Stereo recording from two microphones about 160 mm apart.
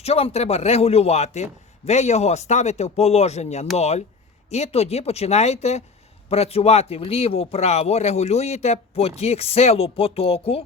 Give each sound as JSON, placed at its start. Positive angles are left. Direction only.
{"t": 0.0, "sound": "a man's voice", "side_deg": 40}